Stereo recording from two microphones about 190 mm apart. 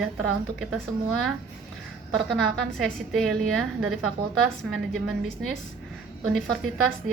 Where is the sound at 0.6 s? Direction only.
Centre (ahead or behind).